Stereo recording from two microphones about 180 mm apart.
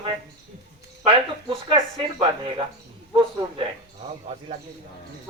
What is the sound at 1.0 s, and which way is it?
Speech, 30° right (ahead or behind).